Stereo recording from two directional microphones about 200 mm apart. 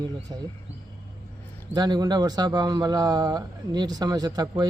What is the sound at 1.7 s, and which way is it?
A man's voice, 20° right (ahead or behind).